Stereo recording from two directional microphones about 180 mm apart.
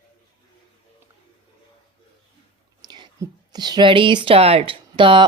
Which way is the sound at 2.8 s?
20° right (ahead or behind).